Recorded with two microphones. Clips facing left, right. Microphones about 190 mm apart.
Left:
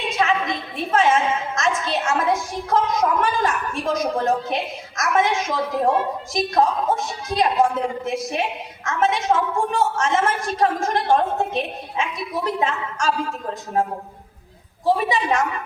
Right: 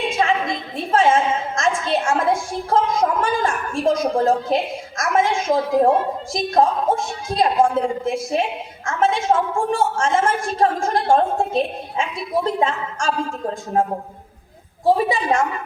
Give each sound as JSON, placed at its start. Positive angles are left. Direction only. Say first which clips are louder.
{"t": 0.2, "sound": "a sound", "louder": "left 1 dB", "side_deg": -30}
{"t": 6.3, "sound": "a woman's voice", "louder": "right 2 dB", "side_deg": -30}
{"t": 15.1, "sound": "a woman's voice", "louder": "right 1 dB", "side_deg": -30}